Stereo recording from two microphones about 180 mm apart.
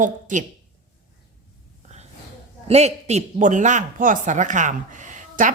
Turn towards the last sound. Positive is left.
turn(degrees=-45)  # may be behind; listen again after turning